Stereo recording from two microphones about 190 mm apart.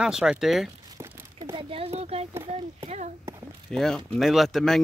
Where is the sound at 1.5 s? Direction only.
30° right (ahead or behind).